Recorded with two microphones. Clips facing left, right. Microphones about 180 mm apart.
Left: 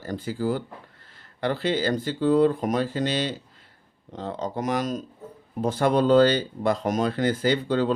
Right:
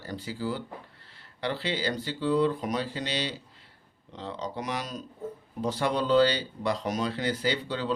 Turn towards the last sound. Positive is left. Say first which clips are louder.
# left 7 dB
turn(degrees=50)  # may be behind; listen again after turning